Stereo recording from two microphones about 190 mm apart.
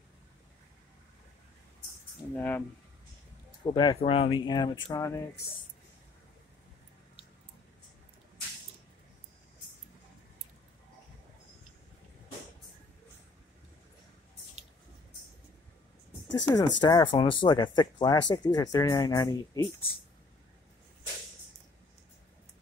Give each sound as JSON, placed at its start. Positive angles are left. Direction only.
{"t": 2.3, "sound": "speech", "side_deg": 10}
{"t": 3.6, "sound": "speech", "side_deg": 25}
{"t": 16.3, "sound": "speech", "side_deg": 20}